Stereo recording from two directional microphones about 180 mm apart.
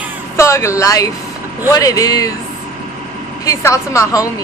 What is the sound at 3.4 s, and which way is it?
Speech, 15° left (ahead or behind).